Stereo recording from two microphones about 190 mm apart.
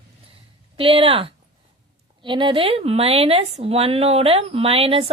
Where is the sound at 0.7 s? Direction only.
30° right (ahead or behind).